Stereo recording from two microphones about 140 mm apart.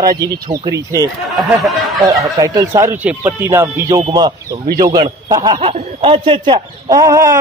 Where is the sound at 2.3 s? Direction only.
25° right (ahead or behind).